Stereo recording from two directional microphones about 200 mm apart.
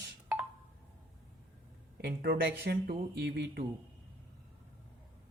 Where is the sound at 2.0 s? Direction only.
55° right (ahead or behind).